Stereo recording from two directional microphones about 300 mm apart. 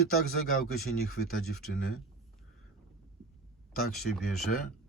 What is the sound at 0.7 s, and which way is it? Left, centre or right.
Speech, left.